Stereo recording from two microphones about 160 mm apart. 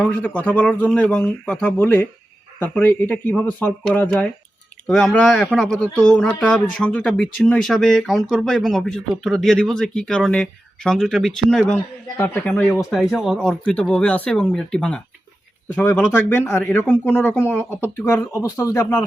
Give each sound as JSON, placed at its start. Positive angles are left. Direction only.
{"t": 0.1, "sound": "speech", "side_deg": 10}
{"t": 12.1, "sound": "speech", "side_deg": 15}